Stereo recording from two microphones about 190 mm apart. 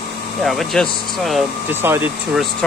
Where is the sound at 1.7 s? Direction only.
10° right (ahead or behind).